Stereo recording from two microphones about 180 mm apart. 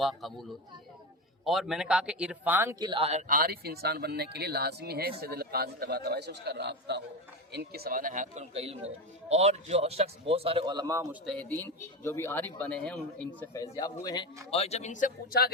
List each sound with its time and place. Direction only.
0.0 s a man's voice: centre (ahead or behind); by 11.0 s 20° right (ahead or behind)
11.3 s speech: 5° left (ahead or behind)
13.5 s speech: 20° left (ahead or behind)
14.5 s speech: 35° left (ahead or behind); by 15.5 s 60° left (ahead or behind)